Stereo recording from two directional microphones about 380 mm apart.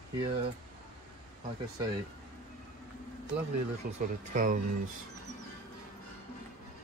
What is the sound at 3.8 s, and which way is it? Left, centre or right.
Speech, right.